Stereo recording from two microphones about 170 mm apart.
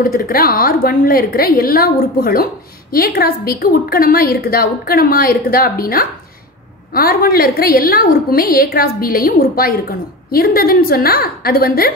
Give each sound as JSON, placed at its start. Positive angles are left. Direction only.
{"t": 0.0, "sound": "a woman's voice", "side_deg": 55}